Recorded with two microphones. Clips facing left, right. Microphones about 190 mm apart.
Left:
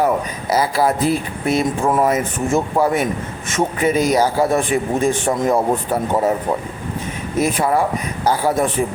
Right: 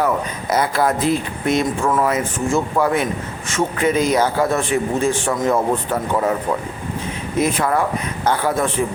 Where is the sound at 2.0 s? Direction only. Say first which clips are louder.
Left 1 dB; 15° left (ahead or behind).